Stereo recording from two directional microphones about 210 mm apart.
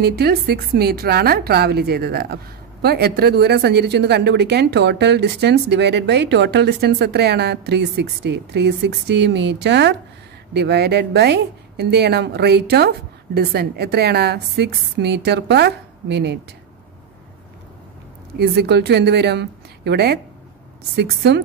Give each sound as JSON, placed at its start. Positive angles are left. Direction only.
{"t": 0.0, "sound": "speech", "side_deg": -50}
{"t": 18.4, "sound": "speech", "side_deg": -50}